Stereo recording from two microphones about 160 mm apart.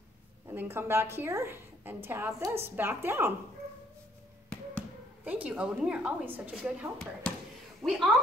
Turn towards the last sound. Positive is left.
turn(degrees=0)  # may be behind; listen again after turning